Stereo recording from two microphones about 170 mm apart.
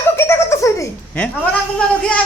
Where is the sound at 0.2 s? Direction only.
15° left (ahead or behind).